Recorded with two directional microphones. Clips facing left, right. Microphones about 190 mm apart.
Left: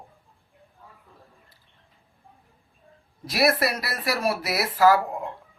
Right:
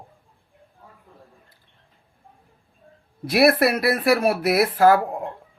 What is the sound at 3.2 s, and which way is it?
Speech, 60° right (ahead or behind).